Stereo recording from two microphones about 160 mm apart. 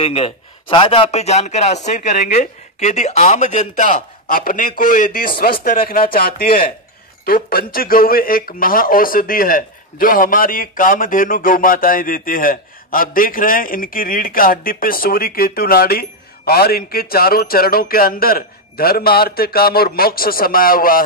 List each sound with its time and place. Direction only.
0.0 s speech: 40° left (ahead or behind); by 21.0 s 65° left (ahead or behind)